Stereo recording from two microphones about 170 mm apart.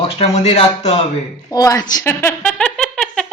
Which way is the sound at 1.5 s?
20° left (ahead or behind).